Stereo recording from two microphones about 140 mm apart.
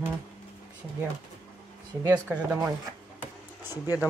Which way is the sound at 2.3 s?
5° right (ahead or behind).